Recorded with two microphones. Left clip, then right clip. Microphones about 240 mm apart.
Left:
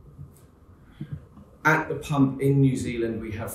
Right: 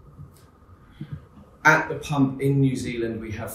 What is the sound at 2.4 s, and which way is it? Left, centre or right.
A man's voice, centre.